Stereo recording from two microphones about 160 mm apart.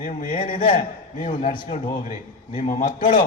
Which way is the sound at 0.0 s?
55° left (ahead or behind).